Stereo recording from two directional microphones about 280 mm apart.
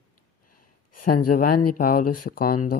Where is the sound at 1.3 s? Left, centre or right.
Left.